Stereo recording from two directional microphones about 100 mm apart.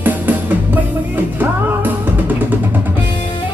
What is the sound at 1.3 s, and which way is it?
Music, 20° right (ahead or behind).